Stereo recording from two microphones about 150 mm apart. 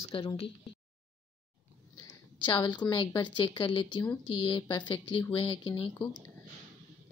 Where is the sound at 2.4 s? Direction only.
30° left (ahead or behind).